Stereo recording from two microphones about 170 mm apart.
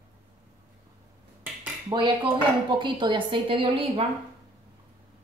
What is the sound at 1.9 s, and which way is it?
A woman's voice, 25° right (ahead or behind).